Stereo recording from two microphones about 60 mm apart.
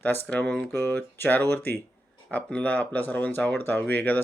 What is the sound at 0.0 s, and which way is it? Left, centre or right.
Speech, left.